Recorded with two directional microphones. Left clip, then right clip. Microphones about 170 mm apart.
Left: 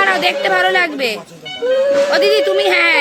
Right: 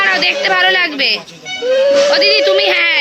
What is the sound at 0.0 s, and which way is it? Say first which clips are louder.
A woman's voice: right 1 dB; 5° left (ahead or behind).